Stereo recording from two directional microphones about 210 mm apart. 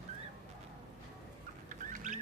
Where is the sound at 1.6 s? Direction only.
35° right (ahead or behind).